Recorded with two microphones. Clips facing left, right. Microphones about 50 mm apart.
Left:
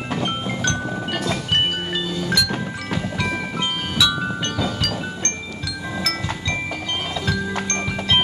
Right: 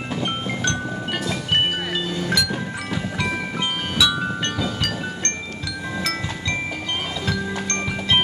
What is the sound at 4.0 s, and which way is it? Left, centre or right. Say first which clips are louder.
Music: even; centre.